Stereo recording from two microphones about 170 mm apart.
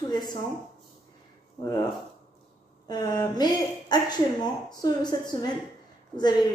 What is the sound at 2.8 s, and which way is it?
A woman's voice, 25° left (ahead or behind).